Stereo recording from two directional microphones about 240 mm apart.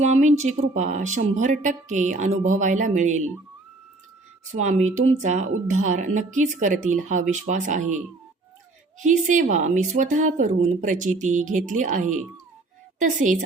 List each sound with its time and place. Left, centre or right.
0.0 s speech: right
4.5 s speech: right
9.0 s speech: right